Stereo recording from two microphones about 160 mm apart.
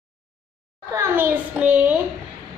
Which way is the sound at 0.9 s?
15° right (ahead or behind).